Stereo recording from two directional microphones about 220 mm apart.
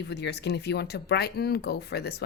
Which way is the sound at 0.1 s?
50° left (ahead or behind).